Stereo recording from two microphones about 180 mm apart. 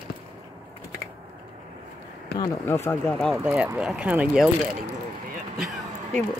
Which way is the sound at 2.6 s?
15° left (ahead or behind).